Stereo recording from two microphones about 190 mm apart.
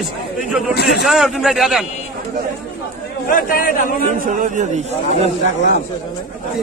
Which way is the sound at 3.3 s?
50° left (ahead or behind).